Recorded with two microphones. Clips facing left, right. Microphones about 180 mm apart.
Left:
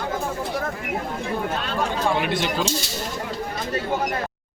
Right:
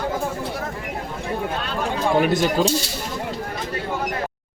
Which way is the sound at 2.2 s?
40° right (ahead or behind).